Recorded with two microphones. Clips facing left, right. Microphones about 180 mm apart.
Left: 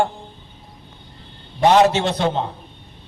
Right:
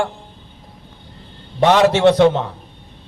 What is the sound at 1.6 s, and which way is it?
Speech, 85° right.